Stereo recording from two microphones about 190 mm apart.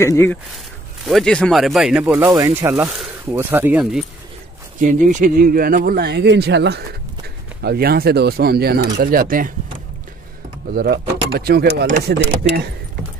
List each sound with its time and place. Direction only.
0.0 s speech: 10° left (ahead or behind)
1.0 s speech: centre (ahead or behind)
2.2 s speech: 20° right (ahead or behind)
2.7 s speech: 5° right (ahead or behind)
4.7 s speech: 45° right (ahead or behind)
10.7 s speech: 55° right (ahead or behind)